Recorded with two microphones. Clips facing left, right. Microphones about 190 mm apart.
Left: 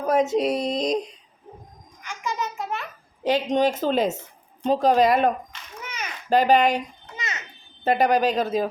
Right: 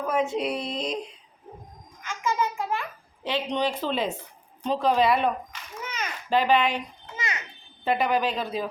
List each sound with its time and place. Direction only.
0.0 s speech: 40° left (ahead or behind)
2.0 s music: 15° left (ahead or behind)
3.2 s a woman's voice: 45° left (ahead or behind)
6.3 s speech: 40° left (ahead or behind)
7.2 s a sound: 20° left (ahead or behind)
7.9 s a woman's voice: 40° left (ahead or behind)